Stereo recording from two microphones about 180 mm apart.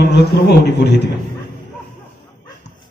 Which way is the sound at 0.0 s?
65° left (ahead or behind).